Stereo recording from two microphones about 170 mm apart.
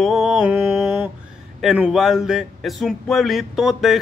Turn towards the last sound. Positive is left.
turn(degrees=0)  # may be behind; listen again after turning